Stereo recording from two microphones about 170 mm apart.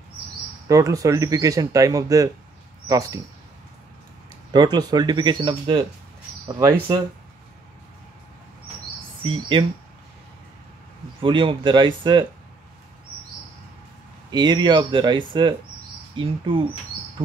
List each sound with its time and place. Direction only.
0.7 s speech: 20° right (ahead or behind)
4.5 s speech: 25° right (ahead or behind)
9.2 s speech: 30° right (ahead or behind)
11.1 s speech: 30° right (ahead or behind)
14.3 s speech: 25° right (ahead or behind)